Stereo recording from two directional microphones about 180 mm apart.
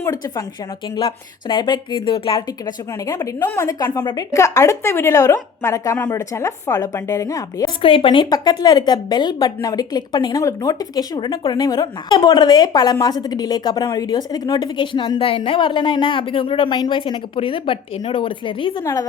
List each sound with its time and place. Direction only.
0.0 s a woman's voice: 20° left (ahead or behind)
7.8 s a woman's voice: 30° left (ahead or behind)